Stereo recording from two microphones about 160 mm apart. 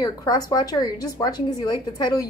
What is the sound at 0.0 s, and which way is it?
A woman's voice, 25° left (ahead or behind).